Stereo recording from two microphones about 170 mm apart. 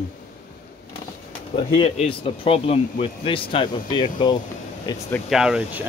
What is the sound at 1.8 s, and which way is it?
Speech, 30° left (ahead or behind).